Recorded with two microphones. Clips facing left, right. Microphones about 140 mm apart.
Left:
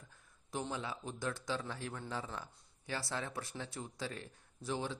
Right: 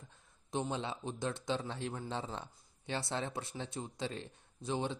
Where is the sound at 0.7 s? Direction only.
25° right (ahead or behind).